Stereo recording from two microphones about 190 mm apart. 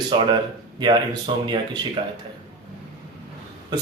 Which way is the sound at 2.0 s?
30° right (ahead or behind).